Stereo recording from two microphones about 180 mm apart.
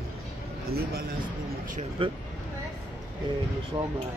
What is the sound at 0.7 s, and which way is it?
Speech, 60° right (ahead or behind).